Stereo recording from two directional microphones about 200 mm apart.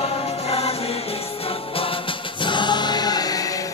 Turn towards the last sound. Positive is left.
turn(degrees=20)  # may be behind; listen again after turning